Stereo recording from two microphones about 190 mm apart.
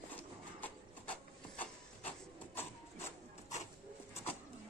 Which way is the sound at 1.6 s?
10° left (ahead or behind).